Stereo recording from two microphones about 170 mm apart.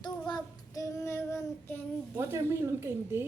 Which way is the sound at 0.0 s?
25° left (ahead or behind).